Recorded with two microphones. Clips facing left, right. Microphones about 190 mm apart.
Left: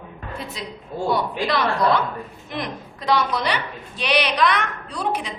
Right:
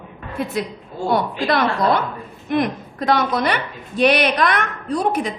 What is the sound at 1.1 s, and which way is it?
A woman's voice, 50° right (ahead or behind).